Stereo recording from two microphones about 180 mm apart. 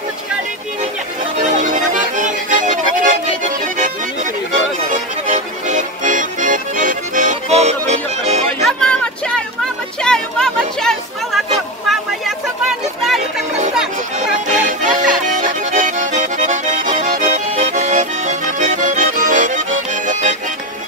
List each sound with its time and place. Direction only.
1.6 s accordion: 45° right (ahead or behind)
4.9 s accordion: 45° right (ahead or behind)
8.6 s a sound: 5° left (ahead or behind)
14.5 s accordion: 45° right (ahead or behind)